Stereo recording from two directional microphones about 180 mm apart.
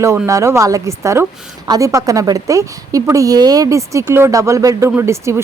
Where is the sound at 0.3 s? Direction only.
15° right (ahead or behind).